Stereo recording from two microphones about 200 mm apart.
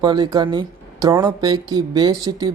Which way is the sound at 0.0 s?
20° right (ahead or behind).